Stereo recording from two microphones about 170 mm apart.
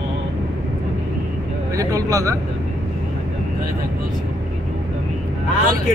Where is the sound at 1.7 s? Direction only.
20° right (ahead or behind).